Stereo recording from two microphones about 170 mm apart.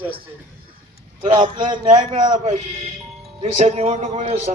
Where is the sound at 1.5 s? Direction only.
30° right (ahead or behind).